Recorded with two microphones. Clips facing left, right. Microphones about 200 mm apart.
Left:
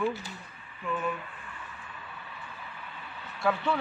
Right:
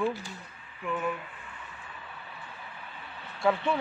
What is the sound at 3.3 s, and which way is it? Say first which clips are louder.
Speech: right 2 dB; 25° right (ahead or behind).